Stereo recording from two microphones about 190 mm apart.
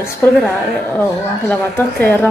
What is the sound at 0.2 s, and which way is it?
Speech, 10° left (ahead or behind).